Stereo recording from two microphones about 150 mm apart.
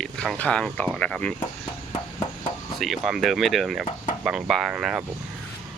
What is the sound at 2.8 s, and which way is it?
Speech, centre (ahead or behind).